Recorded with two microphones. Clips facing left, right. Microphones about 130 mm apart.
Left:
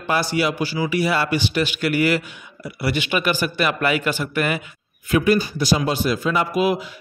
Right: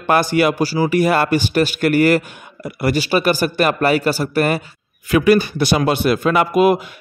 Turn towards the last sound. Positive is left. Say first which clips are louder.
# right 6 dB
turn(degrees=-55)  # may be behind; listen again after turning